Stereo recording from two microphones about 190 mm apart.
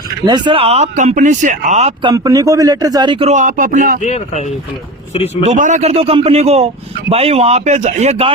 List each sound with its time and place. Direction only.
0.3 s speech: 25° right (ahead or behind); by 3.9 s 45° right (ahead or behind)
4.0 s speech: 40° left (ahead or behind)
5.4 s speech: 40° right (ahead or behind)